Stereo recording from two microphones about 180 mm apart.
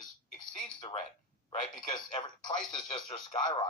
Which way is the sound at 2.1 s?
25° left (ahead or behind).